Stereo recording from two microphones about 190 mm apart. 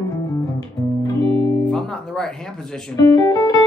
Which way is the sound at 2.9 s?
20° left (ahead or behind).